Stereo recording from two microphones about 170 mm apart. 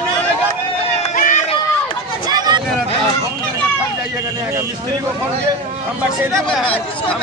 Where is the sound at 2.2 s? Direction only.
25° right (ahead or behind).